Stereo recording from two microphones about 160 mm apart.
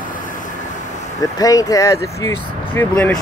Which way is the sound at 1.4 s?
20° left (ahead or behind).